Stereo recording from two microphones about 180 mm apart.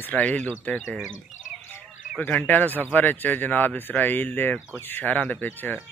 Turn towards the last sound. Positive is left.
turn(degrees=10)  # may be behind; listen again after turning